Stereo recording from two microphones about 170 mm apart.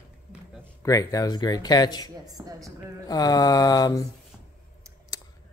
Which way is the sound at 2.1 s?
20° right (ahead or behind).